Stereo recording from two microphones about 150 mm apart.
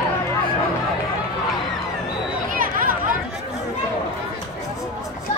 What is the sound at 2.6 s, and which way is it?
Chatter, 65° right (ahead or behind).